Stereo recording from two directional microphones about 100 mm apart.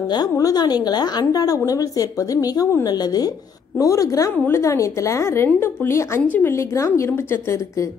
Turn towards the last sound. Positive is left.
turn(degrees=30)  # may be behind; listen again after turning